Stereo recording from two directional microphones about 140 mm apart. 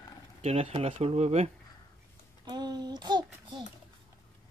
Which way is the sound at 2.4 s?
30° right (ahead or behind).